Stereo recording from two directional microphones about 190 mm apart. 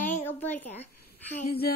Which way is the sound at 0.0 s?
10° left (ahead or behind).